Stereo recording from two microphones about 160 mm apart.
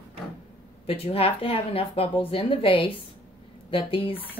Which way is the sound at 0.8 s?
35° left (ahead or behind).